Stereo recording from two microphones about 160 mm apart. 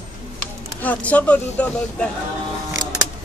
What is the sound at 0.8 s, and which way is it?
Speech, 10° left (ahead or behind).